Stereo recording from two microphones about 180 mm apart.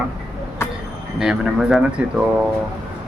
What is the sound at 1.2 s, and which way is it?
Speech, 5° right (ahead or behind).